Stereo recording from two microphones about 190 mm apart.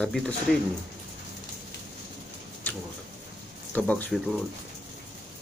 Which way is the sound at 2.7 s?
10° left (ahead or behind).